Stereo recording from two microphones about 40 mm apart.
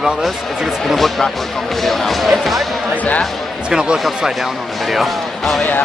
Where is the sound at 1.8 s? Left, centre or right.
Centre.